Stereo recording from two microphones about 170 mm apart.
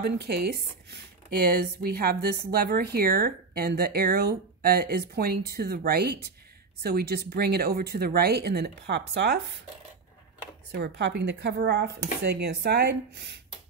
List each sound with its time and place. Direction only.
0.0 s speech: 70° right (ahead or behind)
10.7 s speech: 90° right